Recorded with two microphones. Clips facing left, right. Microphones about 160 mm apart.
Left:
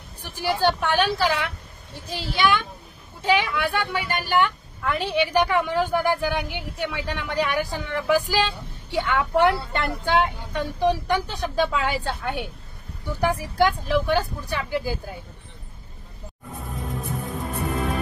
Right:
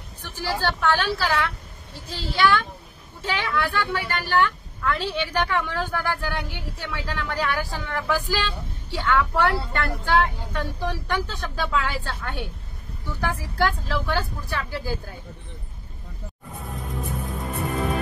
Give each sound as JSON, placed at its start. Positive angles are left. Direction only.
{"t": 0.2, "sound": "a woman's voice", "side_deg": 15}